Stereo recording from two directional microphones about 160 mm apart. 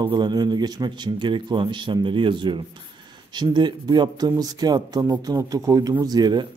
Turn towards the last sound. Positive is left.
turn(degrees=-25)  # may be behind; listen again after turning